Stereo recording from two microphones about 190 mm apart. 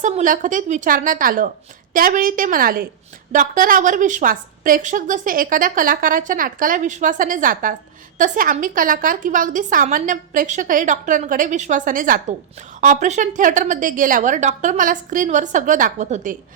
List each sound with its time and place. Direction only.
0.0 s a woman's voice: 40° right (ahead or behind)